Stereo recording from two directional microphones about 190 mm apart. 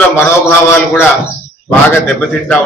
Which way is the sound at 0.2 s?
10° left (ahead or behind).